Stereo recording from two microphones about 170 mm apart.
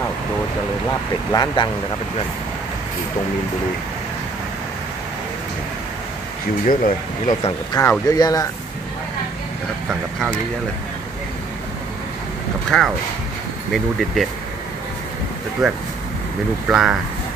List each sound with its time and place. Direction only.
1.3 s speech: 25° left (ahead or behind)
6.6 s speech: 50° left (ahead or behind)
7.8 s speech: 20° left (ahead or behind)
12.6 s speech: 5° left (ahead or behind)
15.6 s speech: centre (ahead or behind)